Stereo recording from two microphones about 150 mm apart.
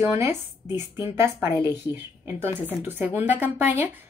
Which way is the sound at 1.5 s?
25° left (ahead or behind).